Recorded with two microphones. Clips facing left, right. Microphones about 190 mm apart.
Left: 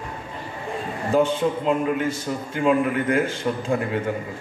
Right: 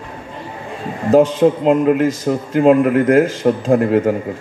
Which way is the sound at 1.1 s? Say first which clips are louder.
Right 9 dB; 80° right.